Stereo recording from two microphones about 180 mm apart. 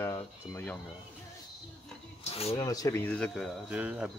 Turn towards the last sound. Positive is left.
turn(degrees=-5)  # may be behind; listen again after turning